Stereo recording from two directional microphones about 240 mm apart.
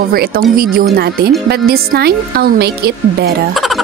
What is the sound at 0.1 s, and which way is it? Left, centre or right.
A woman's voice, right.